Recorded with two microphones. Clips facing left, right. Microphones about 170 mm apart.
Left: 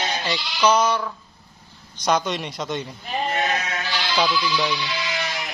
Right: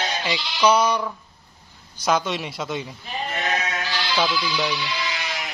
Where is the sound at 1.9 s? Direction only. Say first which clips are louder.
Even; 5° right (ahead or behind).